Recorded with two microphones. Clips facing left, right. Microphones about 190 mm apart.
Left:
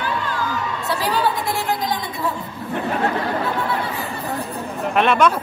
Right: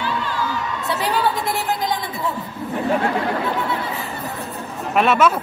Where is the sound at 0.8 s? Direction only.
20° right (ahead or behind).